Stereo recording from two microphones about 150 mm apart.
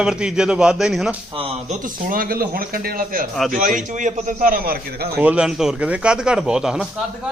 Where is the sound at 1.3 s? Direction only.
45° right (ahead or behind); by 3.2 s 75° right (ahead or behind).